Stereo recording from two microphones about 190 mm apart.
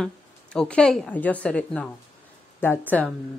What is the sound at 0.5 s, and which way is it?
A woman's voice, 5° left (ahead or behind).